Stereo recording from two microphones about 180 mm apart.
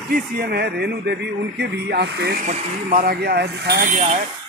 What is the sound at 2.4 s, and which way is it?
Speech, 55° right (ahead or behind).